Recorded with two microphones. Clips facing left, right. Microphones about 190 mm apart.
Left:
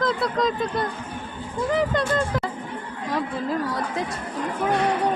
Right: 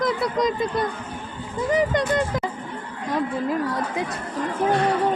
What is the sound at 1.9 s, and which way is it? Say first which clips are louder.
Speech: right 1 dB; 20° right (ahead or behind).